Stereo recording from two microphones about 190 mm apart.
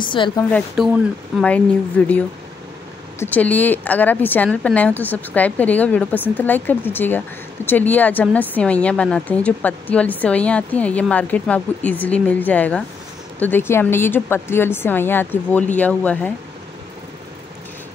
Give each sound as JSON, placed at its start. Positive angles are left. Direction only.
{"t": 0.0, "sound": "a woman's voice", "side_deg": 25}
{"t": 0.4, "sound": "speech", "side_deg": 5}